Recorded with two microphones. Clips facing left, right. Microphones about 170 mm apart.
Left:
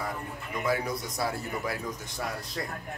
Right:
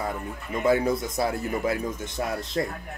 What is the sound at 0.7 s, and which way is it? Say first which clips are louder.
A man's voice: right 8 dB; 25° right (ahead or behind).